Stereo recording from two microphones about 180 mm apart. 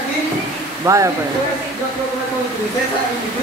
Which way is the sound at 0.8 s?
15° right (ahead or behind).